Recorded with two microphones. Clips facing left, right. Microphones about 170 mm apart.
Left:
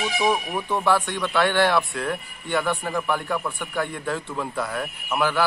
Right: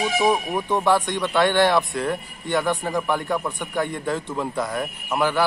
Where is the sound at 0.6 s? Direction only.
15° right (ahead or behind).